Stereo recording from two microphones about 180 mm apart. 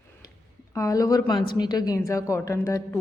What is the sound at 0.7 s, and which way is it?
A woman's voice, 15° left (ahead or behind).